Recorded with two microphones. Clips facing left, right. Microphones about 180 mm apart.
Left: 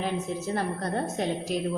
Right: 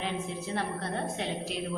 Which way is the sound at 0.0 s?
45° left (ahead or behind).